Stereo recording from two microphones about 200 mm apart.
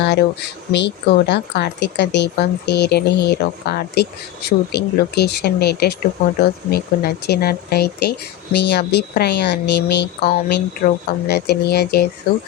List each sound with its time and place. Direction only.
0.0 s speech: 55° left (ahead or behind)